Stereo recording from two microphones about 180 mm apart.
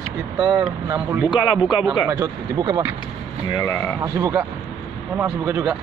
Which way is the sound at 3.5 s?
20° left (ahead or behind).